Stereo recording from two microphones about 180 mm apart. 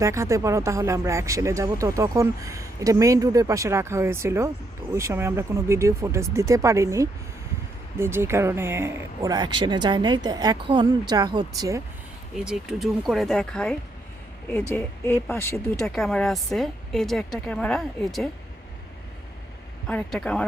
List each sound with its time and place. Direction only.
0.0 s speech: 15° right (ahead or behind)
12.5 s a woman's voice: centre (ahead or behind); by 15.5 s 15° left (ahead or behind)
15.8 s a woman's voice: centre (ahead or behind)
19.9 s a woman's voice: 5° left (ahead or behind)